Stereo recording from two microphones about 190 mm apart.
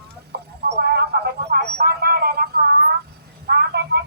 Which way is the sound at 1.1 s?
65° right (ahead or behind).